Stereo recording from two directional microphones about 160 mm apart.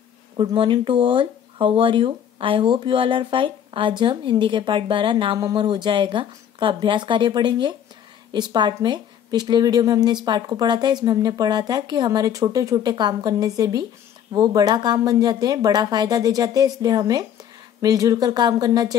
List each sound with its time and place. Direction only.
0.4 s speech: 30° right (ahead or behind)